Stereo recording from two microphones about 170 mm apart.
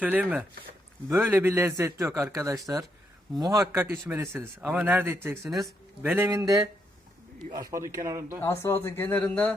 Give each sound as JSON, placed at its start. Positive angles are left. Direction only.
{"t": 0.0, "sound": "a man's voice", "side_deg": -10}
{"t": 5.4, "sound": "speech", "side_deg": 0}
{"t": 6.0, "sound": "a man's voice", "side_deg": -15}
{"t": 8.4, "sound": "speech", "side_deg": 15}